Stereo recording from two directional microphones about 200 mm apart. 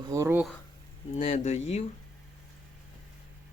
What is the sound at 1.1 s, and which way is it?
Speech, 35° left (ahead or behind).